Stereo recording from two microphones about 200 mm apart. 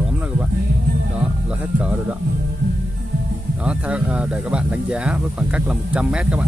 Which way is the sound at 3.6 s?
5° right (ahead or behind).